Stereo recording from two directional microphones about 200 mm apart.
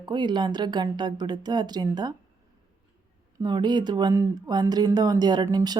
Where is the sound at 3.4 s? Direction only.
20° right (ahead or behind).